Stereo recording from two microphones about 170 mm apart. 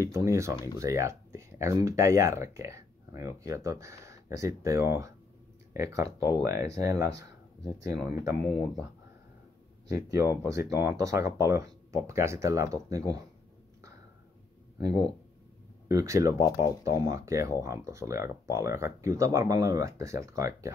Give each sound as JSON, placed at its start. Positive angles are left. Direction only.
{"t": 0.0, "sound": "speech", "side_deg": -15}
{"t": 9.8, "sound": "speech", "side_deg": -15}
{"t": 14.8, "sound": "speech", "side_deg": -20}